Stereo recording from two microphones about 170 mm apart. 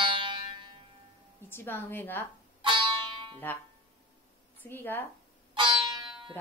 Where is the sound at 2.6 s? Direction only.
30° right (ahead or behind).